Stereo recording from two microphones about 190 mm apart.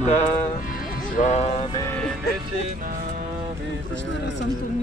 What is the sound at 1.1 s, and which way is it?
Music, 35° left (ahead or behind).